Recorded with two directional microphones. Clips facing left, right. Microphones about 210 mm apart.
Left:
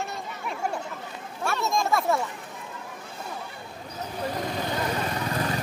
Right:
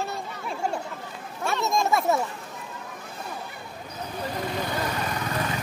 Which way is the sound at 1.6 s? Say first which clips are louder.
Right 2 dB; 20° right (ahead or behind).